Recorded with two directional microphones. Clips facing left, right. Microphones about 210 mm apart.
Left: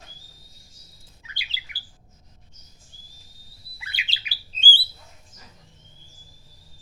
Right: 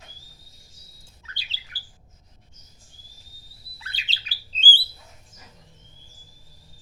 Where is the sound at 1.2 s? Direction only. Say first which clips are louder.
Left 2 dB; 10° left (ahead or behind).